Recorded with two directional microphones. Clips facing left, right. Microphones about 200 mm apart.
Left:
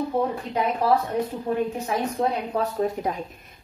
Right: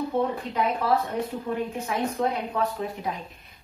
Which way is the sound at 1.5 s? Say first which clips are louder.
Left 4 dB; 40° left (ahead or behind).